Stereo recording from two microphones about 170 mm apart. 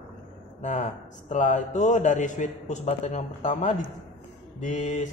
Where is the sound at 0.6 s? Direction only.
45° left (ahead or behind).